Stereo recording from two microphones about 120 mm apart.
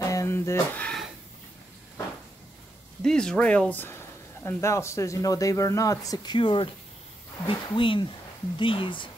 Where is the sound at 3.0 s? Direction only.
5° left (ahead or behind); by 6.3 s 30° left (ahead or behind).